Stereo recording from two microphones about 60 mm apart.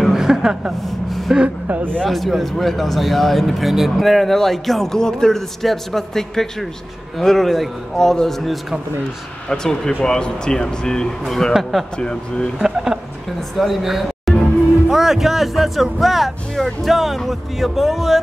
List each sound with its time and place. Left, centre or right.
0.1 s a sound: centre
1.3 s speech: centre
2.0 s speech: centre
12.5 s speech: centre